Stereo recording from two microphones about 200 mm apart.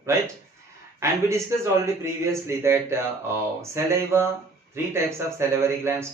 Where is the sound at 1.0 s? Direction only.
15° right (ahead or behind).